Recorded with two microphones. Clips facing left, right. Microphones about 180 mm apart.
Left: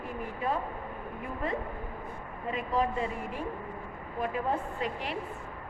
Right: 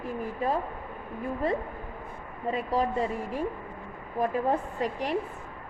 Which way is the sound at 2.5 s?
35° right (ahead or behind).